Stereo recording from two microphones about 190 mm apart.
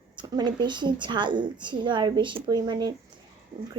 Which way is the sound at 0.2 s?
25° right (ahead or behind).